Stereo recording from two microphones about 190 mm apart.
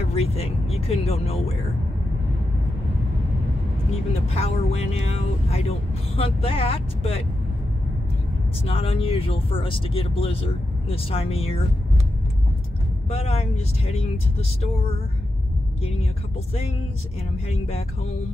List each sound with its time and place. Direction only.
0.0 s speech: 35° left (ahead or behind)
4.3 s speech: 35° left (ahead or behind)
8.6 s speech: 30° left (ahead or behind)
13.1 s speech: 35° left (ahead or behind)
15.8 s speech: 30° left (ahead or behind)
17.5 s speech: 35° left (ahead or behind)